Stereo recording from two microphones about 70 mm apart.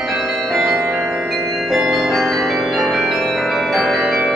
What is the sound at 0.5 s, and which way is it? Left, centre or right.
Change ringing, centre.